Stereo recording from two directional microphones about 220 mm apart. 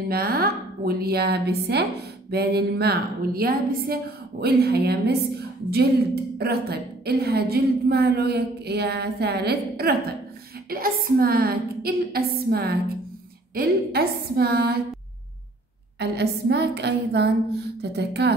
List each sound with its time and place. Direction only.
0.1 s a woman's voice: 45° right (ahead or behind)
6.3 s a woman's voice: 45° right (ahead or behind)
16.0 s a woman's voice: 50° right (ahead or behind)